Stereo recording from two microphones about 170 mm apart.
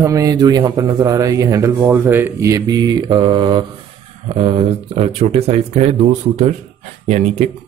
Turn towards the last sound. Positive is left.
turn(degrees=-40)  # may be behind; listen again after turning